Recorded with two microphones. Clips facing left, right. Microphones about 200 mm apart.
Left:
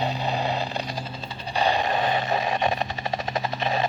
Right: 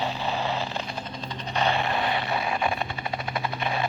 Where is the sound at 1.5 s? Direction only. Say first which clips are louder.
Left 2 dB; 35° left (ahead or behind).